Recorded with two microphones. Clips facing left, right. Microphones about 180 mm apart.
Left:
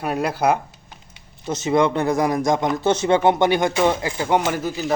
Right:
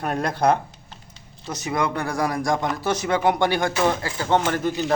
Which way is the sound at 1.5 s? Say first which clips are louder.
Left 6 dB; 25° left (ahead or behind).